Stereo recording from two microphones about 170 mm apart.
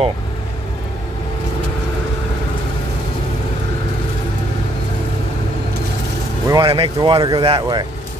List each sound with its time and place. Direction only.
6.4 s vehicle: 20° right (ahead or behind)
6.7 s speech: 30° right (ahead or behind)